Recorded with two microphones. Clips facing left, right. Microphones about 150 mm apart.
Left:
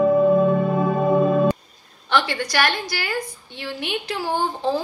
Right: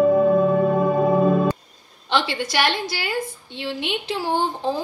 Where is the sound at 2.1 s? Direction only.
25° right (ahead or behind).